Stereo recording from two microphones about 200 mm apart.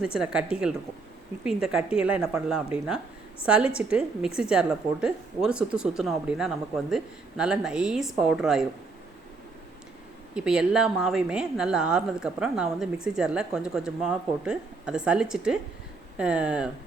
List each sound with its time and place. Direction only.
0.0 s speech: 5° right (ahead or behind)
1.5 s speech: 5° right (ahead or behind)
10.3 s speech: 5° right (ahead or behind)